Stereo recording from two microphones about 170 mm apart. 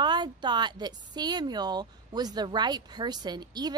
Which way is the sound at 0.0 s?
25° right (ahead or behind).